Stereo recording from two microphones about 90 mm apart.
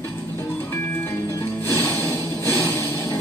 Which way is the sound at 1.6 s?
30° left (ahead or behind).